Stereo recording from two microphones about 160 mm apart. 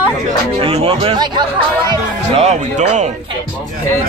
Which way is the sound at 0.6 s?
35° right (ahead or behind).